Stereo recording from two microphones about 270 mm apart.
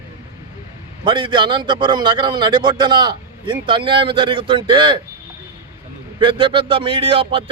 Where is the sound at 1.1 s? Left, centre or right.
Centre.